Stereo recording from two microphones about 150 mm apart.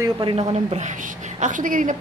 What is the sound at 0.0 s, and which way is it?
A woman's voice, 35° right (ahead or behind).